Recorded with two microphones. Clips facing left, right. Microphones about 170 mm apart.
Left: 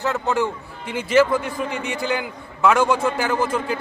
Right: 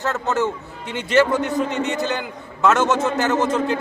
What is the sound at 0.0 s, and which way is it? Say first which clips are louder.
A man's voice: even; 15° left (ahead or behind).